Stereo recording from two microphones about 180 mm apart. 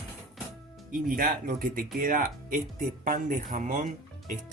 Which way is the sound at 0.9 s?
50° right (ahead or behind).